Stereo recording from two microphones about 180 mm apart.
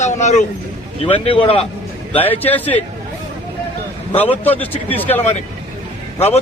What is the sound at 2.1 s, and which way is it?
Speech, 10° left (ahead or behind).